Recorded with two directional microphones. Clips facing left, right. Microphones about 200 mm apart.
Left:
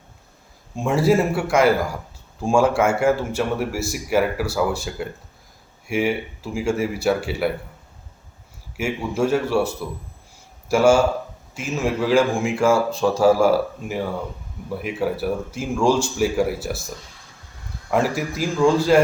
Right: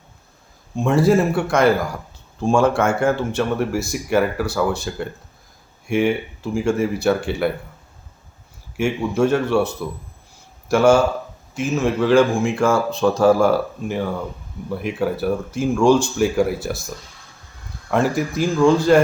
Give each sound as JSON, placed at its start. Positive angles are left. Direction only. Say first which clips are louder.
{"t": 0.9, "sound": "speech", "louder": "right 2 dB", "side_deg": 5}
{"t": 8.8, "sound": "speech", "louder": "right 4 dB", "side_deg": 5}
{"t": 17.9, "sound": "speech", "louder": "right 2 dB", "side_deg": 5}